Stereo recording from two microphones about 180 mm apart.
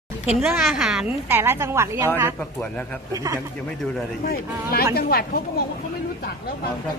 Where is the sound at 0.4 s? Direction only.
Centre (ahead or behind).